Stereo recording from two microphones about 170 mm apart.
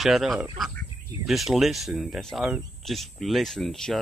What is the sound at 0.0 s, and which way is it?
Speech, centre (ahead or behind).